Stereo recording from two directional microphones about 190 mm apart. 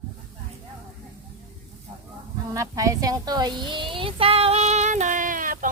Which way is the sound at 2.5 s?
15° right (ahead or behind).